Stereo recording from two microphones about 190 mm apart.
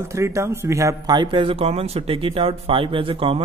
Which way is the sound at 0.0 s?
15° right (ahead or behind).